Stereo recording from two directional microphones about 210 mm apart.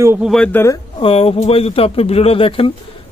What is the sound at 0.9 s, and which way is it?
Speech, 25° left (ahead or behind).